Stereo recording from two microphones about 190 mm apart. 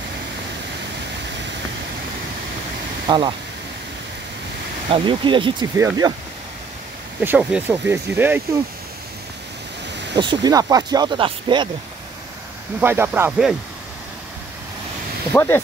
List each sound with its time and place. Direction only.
3.1 s speech: 25° right (ahead or behind)
4.8 s speech: 25° right (ahead or behind)
7.2 s speech: 5° right (ahead or behind)
10.1 s speech: 20° right (ahead or behind)
12.8 s speech: 10° right (ahead or behind)
15.3 s speech: 10° left (ahead or behind)